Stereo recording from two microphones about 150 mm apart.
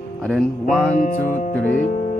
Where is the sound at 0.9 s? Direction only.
55° left (ahead or behind).